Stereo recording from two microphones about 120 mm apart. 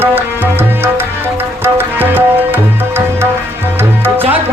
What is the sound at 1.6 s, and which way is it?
Tabla, 15° right (ahead or behind).